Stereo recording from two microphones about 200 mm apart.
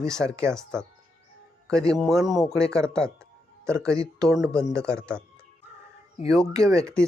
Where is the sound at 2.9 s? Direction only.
5° left (ahead or behind).